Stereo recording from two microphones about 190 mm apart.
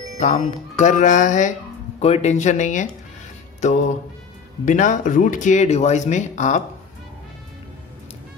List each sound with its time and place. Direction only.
0.2 s speech: 40° left (ahead or behind)